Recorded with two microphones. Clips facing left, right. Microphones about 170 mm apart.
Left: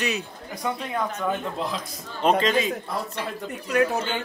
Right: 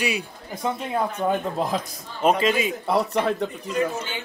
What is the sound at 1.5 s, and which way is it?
Speech, 45° right (ahead or behind).